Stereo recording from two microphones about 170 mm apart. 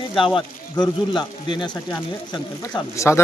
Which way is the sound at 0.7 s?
25° left (ahead or behind).